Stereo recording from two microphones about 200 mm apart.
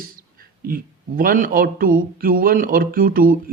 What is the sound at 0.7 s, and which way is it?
Speech, 45° right (ahead or behind).